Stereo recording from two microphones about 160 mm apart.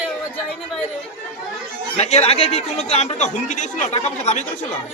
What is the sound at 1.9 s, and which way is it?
Speech, 40° left (ahead or behind).